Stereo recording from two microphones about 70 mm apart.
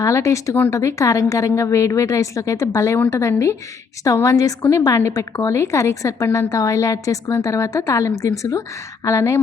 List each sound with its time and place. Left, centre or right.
0.0 s a woman's voice: left